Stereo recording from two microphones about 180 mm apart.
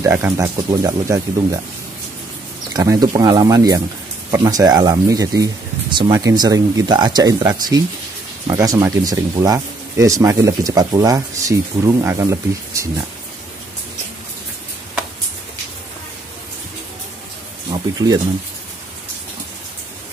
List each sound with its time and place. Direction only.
0.0 s speech: 15° right (ahead or behind)
2.7 s speech: 20° right (ahead or behind)
17.6 s speech: 25° right (ahead or behind)